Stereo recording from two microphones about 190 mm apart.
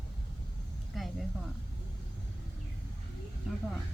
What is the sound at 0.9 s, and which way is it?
Speech, centre (ahead or behind).